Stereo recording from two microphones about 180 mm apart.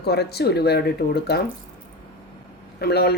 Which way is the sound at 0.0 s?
65° left (ahead or behind).